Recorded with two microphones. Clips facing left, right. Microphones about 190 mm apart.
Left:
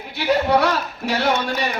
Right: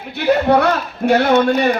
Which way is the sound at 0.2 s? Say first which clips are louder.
Right 4 dB; 55° right (ahead or behind).